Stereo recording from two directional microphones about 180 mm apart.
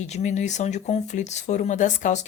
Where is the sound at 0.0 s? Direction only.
40° left (ahead or behind).